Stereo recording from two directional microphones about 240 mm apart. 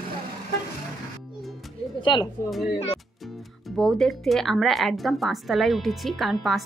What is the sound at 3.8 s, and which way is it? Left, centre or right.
A woman's voice, centre.